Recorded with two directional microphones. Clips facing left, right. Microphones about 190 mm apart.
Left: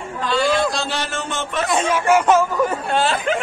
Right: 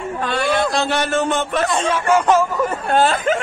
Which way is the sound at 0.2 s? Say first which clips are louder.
Left 1 dB; 60° right (ahead or behind).